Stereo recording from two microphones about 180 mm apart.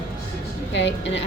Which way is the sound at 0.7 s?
75° left (ahead or behind).